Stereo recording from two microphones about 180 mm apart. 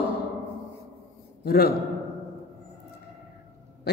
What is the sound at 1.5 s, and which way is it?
Speech, 60° left (ahead or behind).